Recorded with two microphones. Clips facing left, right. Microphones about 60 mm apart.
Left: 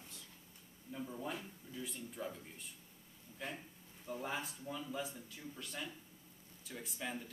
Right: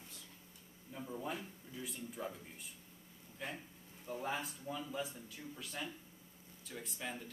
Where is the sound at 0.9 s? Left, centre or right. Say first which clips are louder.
Even; centre.